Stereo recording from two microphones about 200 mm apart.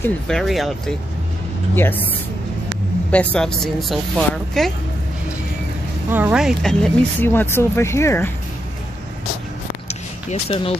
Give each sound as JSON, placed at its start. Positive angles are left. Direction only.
{"t": 0.0, "sound": "speech", "side_deg": 5}
{"t": 3.1, "sound": "speech", "side_deg": 5}
{"t": 6.1, "sound": "speech", "side_deg": -5}
{"t": 9.8, "sound": "a sound", "side_deg": 30}